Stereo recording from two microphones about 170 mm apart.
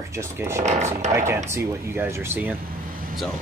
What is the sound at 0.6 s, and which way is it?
Speech, 40° right (ahead or behind).